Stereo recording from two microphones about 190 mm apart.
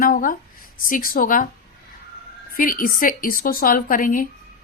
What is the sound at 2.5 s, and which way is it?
A woman's voice, 45° left (ahead or behind).